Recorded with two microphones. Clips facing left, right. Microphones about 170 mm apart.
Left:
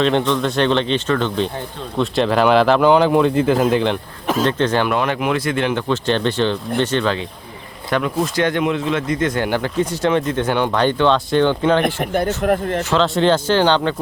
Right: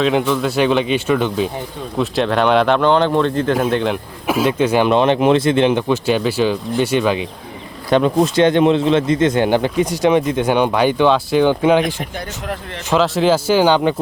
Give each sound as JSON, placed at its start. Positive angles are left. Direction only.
{"t": 0.0, "sound": "speech", "side_deg": -5}
{"t": 2.0, "sound": "speech", "side_deg": 0}
{"t": 4.9, "sound": "speech", "side_deg": -25}
{"t": 7.9, "sound": "speech", "side_deg": -25}
{"t": 12.4, "sound": "speech", "side_deg": 50}
{"t": 13.0, "sound": "speech", "side_deg": -5}